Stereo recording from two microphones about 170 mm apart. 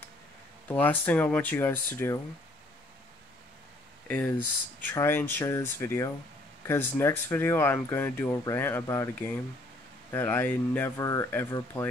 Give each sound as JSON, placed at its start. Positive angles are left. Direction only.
{"t": 0.7, "sound": "speech", "side_deg": 10}
{"t": 4.1, "sound": "speech", "side_deg": 10}